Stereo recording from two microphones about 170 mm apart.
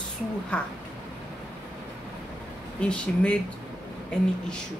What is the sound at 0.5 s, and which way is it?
Speech, 5° left (ahead or behind).